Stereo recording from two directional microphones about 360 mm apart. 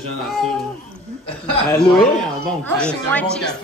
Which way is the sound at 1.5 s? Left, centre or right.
Centre.